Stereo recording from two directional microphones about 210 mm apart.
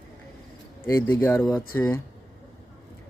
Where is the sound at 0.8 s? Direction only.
15° left (ahead or behind).